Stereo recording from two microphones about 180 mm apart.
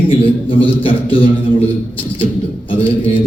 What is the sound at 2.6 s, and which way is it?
Speech, 30° left (ahead or behind).